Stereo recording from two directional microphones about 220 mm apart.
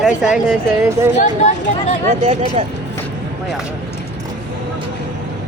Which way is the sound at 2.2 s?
30° right (ahead or behind).